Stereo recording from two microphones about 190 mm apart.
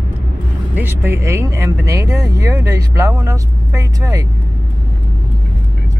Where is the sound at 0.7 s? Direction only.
10° right (ahead or behind).